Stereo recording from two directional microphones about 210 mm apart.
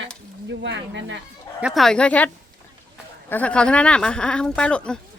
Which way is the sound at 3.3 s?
5° left (ahead or behind).